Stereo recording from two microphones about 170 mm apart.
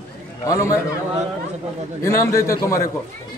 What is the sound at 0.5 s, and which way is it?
Speech, 20° left (ahead or behind).